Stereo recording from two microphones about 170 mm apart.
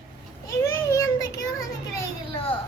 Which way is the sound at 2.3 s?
30° left (ahead or behind).